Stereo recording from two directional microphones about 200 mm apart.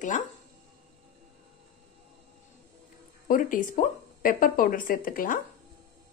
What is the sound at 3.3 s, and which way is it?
Speech, 40° left (ahead or behind).